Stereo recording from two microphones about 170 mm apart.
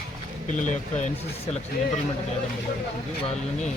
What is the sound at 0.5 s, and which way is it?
Speech, 45° left (ahead or behind).